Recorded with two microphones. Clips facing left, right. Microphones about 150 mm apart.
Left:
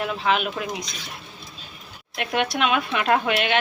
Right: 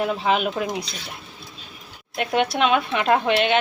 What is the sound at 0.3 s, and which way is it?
Speech, 30° right (ahead or behind).